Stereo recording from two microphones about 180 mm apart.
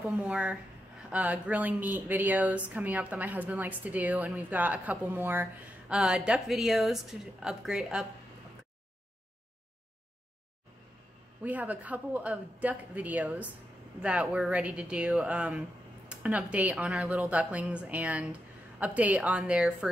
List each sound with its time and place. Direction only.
0.2 s speech: 5° right (ahead or behind)
11.4 s speech: 10° right (ahead or behind)